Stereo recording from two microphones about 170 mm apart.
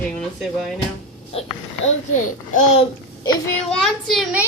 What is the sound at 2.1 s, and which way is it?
Speech, 45° left (ahead or behind).